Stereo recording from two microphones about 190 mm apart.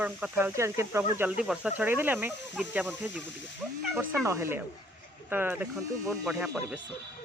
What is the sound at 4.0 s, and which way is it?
Speech, 15° right (ahead or behind).